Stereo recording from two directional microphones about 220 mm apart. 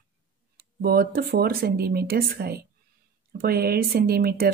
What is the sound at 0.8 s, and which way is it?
A woman's voice, 45° right (ahead or behind).